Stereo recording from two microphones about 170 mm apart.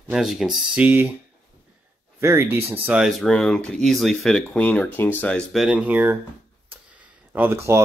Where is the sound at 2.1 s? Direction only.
15° right (ahead or behind).